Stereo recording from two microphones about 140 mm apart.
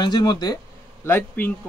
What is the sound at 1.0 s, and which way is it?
Speech, 15° left (ahead or behind).